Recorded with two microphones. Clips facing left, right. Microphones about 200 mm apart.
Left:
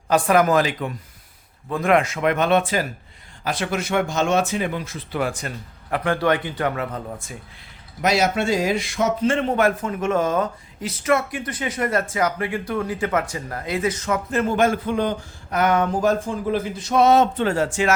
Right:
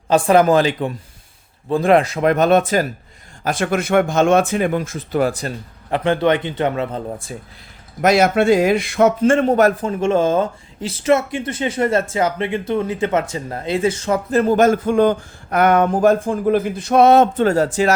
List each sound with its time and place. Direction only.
0.1 s a man's voice: 30° right (ahead or behind)
8.0 s a man's voice: 55° right (ahead or behind); by 17.9 s 40° right (ahead or behind)